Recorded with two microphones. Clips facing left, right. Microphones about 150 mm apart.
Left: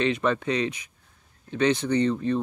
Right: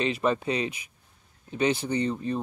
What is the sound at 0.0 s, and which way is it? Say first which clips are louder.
Speech: left 2 dB; 35° right (ahead or behind).